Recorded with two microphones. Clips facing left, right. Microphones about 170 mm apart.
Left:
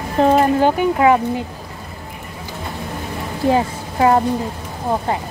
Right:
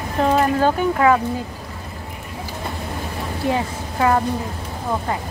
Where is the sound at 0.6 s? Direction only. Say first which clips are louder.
Left 2 dB; 20° left (ahead or behind).